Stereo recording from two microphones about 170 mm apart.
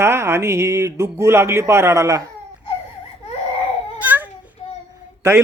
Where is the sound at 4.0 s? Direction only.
10° right (ahead or behind).